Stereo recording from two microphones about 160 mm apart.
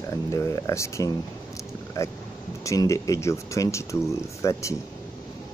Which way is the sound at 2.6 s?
20° left (ahead or behind).